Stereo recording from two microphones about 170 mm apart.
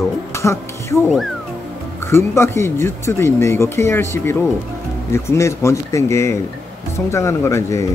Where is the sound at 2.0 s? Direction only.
15° left (ahead or behind).